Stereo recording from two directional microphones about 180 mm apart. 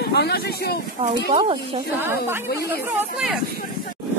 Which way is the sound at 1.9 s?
15° right (ahead or behind).